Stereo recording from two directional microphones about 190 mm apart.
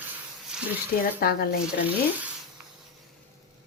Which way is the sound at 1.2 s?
50° left (ahead or behind).